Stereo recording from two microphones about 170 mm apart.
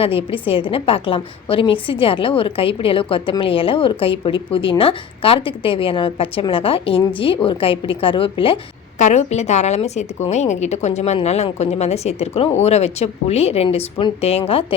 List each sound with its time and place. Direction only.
0.0 s a woman's voice: 35° left (ahead or behind)
9.0 s a woman's voice: 45° left (ahead or behind)